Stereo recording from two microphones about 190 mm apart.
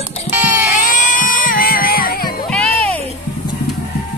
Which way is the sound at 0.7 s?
45° left (ahead or behind).